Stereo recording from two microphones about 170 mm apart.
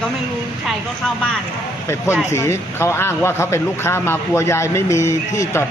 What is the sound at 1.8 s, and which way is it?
A man's voice, 15° left (ahead or behind).